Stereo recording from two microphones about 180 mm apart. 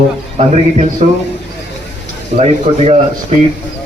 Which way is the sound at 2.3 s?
35° right (ahead or behind).